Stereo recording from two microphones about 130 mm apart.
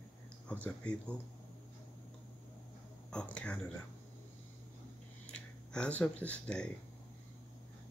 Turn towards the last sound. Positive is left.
turn(degrees=10)  # may be behind; listen again after turning